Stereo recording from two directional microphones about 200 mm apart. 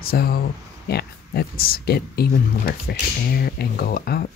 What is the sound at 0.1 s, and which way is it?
Speech, 50° left (ahead or behind).